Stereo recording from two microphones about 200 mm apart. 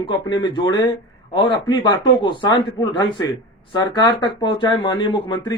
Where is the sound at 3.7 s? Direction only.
20° left (ahead or behind).